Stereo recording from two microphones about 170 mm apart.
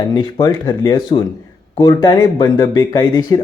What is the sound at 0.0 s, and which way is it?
Speech, 25° left (ahead or behind).